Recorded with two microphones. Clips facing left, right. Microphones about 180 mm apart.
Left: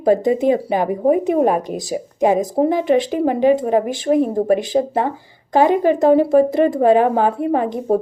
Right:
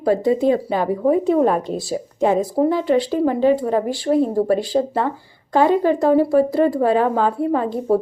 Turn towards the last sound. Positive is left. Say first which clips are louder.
# left 1 dB
turn(degrees=20)  # may be behind; listen again after turning